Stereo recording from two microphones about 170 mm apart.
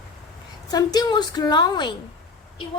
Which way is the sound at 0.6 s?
25° left (ahead or behind).